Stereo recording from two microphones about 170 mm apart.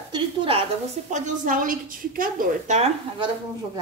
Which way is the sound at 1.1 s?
50° right (ahead or behind).